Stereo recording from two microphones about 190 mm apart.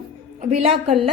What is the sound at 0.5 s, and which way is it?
Speech, 35° right (ahead or behind).